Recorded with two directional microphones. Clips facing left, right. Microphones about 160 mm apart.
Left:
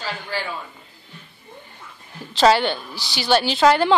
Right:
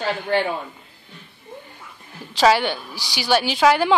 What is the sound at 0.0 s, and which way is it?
Speech, 60° right (ahead or behind).